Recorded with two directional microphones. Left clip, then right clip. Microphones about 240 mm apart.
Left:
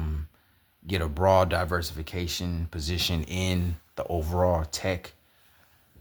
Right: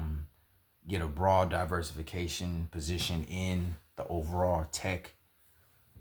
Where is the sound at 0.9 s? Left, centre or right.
Left.